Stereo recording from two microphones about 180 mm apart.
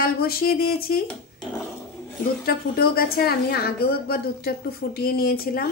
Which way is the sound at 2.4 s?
55° left (ahead or behind).